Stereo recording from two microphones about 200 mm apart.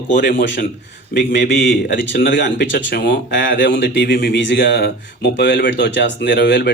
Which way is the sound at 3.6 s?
65° left (ahead or behind).